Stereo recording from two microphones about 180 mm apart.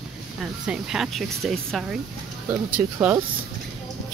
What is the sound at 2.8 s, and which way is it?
Speech, 10° right (ahead or behind).